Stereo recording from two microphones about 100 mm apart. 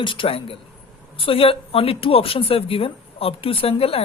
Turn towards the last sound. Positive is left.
turn(degrees=75)  # may be behind; listen again after turning